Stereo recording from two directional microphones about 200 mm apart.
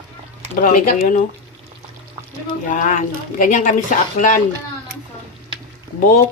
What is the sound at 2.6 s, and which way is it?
Speech, 40° left (ahead or behind).